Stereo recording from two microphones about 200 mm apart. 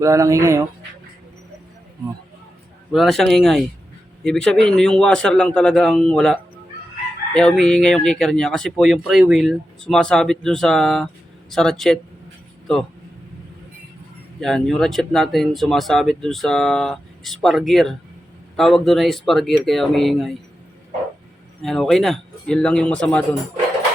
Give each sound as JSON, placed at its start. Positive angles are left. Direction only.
{"t": 0.0, "sound": "speech", "side_deg": -15}
{"t": 2.9, "sound": "speech", "side_deg": 0}
{"t": 14.4, "sound": "speech", "side_deg": 0}
{"t": 21.6, "sound": "speech", "side_deg": 0}